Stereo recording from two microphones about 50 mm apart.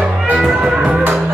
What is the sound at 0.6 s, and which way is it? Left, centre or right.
Music, centre.